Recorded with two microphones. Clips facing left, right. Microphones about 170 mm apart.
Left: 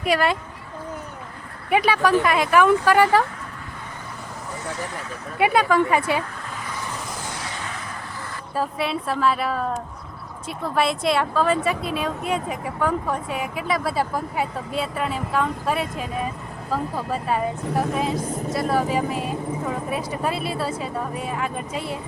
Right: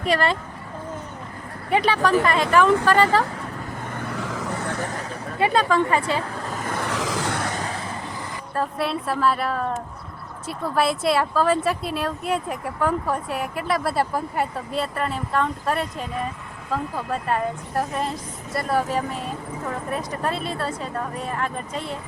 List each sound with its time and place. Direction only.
0.0 s speech: 10° left (ahead or behind)
1.7 s speech: 10° left (ahead or behind)
4.1 s vehicle: 90° right
5.4 s speech: 10° left (ahead or behind)
6.5 s vehicle: 50° right (ahead or behind)
6.8 s vehicle: 90° right; by 7.8 s 40° right (ahead or behind)
8.5 s speech: centre (ahead or behind)